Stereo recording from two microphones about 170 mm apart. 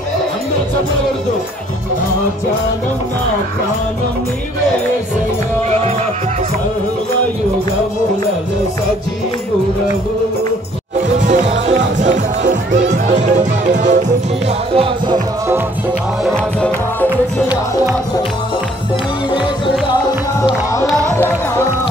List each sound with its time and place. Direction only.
11.2 s music: 45° right (ahead or behind)
14.7 s music: 30° right (ahead or behind)
16.3 s music: 5° left (ahead or behind)
20.4 s music: 20° left (ahead or behind)